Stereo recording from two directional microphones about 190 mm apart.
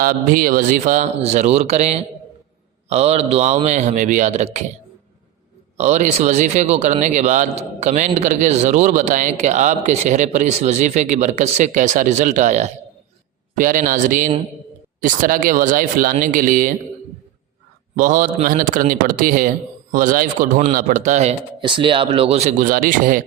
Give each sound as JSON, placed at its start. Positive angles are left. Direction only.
{"t": 0.0, "sound": "speech", "side_deg": -50}
{"t": 5.7, "sound": "a man's voice", "side_deg": -40}
{"t": 17.9, "sound": "a man's voice", "side_deg": -45}
{"t": 21.6, "sound": "speech", "side_deg": -25}